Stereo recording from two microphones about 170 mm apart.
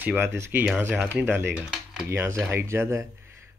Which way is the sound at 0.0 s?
15° right (ahead or behind).